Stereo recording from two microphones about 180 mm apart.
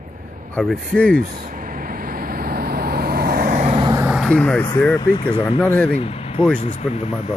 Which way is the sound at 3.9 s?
5° right (ahead or behind).